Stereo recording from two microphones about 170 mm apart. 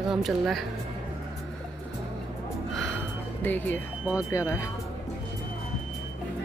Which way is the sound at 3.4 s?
10° left (ahead or behind).